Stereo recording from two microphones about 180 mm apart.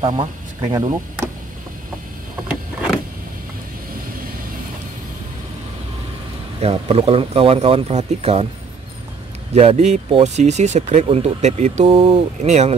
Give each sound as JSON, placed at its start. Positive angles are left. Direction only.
{"t": 0.0, "sound": "speech", "side_deg": -30}
{"t": 6.6, "sound": "speech", "side_deg": -35}
{"t": 9.5, "sound": "speech", "side_deg": -35}